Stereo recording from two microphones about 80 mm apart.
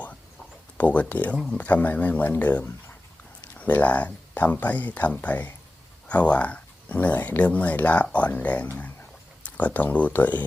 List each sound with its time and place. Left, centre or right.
0.8 s speech: centre